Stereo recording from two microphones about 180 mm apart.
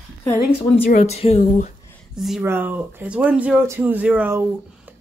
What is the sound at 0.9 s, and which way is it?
Speech, 35° left (ahead or behind).